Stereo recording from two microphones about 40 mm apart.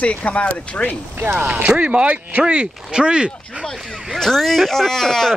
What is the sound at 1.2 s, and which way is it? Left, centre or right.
Speech, right.